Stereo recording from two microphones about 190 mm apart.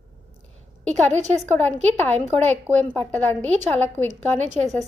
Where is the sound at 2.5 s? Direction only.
10° left (ahead or behind).